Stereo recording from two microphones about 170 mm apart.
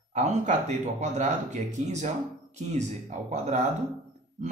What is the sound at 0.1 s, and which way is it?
Speech, 40° right (ahead or behind).